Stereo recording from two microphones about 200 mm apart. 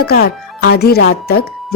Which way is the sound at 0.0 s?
50° left (ahead or behind).